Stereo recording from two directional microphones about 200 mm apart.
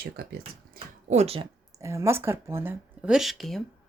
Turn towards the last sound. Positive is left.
turn(degrees=0)  # may be behind; listen again after turning